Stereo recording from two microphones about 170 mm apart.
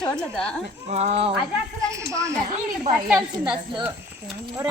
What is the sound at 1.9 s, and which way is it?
Speech, 20° right (ahead or behind).